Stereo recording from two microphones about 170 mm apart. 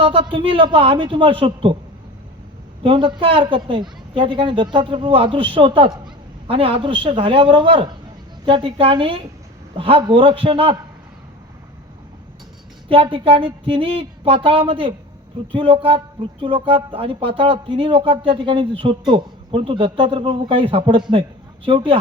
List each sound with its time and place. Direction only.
0.0 s speech: 30° right (ahead or behind)
2.8 s a woman's voice: 30° right (ahead or behind)
12.9 s a man's voice: 30° right (ahead or behind)